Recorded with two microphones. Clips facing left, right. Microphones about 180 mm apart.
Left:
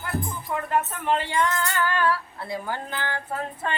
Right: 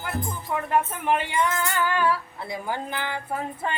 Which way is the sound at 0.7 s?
15° right (ahead or behind).